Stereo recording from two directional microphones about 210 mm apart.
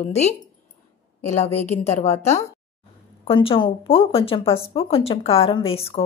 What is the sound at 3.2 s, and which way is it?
A woman's voice, 25° left (ahead or behind).